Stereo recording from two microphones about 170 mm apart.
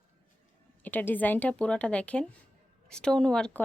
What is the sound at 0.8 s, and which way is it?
A woman's voice, 10° left (ahead or behind).